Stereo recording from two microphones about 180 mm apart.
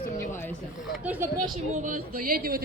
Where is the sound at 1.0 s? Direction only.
10° right (ahead or behind).